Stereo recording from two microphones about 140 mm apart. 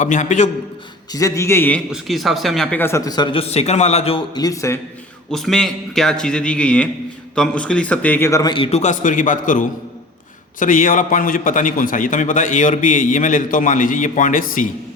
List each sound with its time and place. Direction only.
0.0 s a man's voice: 60° left (ahead or behind)
1.1 s a man's voice: 20° left (ahead or behind)
1.9 s a man's voice: centre (ahead or behind)
2.8 s a man's voice: 20° left (ahead or behind)
3.4 s a man's voice: 50° left (ahead or behind)
4.4 s a man's voice: 25° left (ahead or behind)
5.3 s a man's voice: 5° left (ahead or behind); by 8.5 s 20° left (ahead or behind)
8.5 s a man's voice: 40° left (ahead or behind)
8.8 s a man's voice: 65° left (ahead or behind)